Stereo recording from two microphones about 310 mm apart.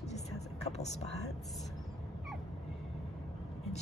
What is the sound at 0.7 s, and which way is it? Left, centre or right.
Speech, left.